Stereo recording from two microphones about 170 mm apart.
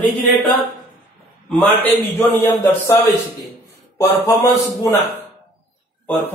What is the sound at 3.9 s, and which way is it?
A man's voice, 15° left (ahead or behind).